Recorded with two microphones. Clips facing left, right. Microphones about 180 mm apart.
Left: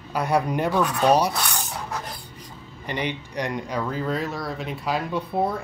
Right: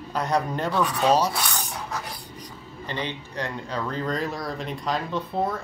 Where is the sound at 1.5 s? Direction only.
10° left (ahead or behind).